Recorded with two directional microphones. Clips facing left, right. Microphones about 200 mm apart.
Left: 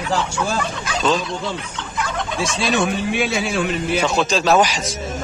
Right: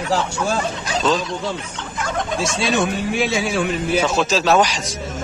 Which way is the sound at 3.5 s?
10° right (ahead or behind).